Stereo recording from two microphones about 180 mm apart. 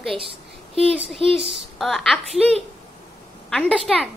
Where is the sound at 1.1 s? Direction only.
30° right (ahead or behind).